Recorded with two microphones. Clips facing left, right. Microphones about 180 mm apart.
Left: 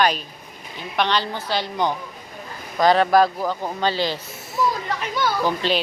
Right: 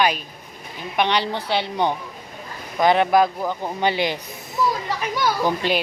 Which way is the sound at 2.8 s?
20° right (ahead or behind).